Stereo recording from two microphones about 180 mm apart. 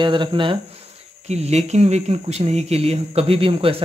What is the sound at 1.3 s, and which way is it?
Speech, 40° right (ahead or behind).